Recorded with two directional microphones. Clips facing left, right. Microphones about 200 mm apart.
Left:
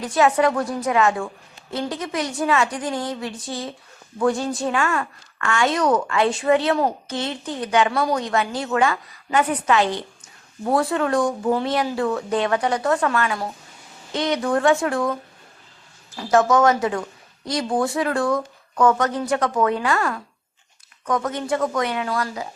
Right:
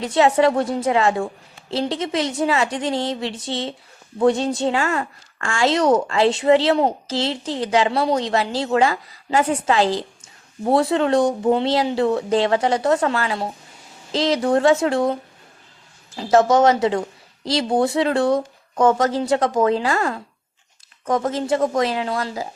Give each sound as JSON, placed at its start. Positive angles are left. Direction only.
{"t": 0.0, "sound": "a woman's voice", "side_deg": -25}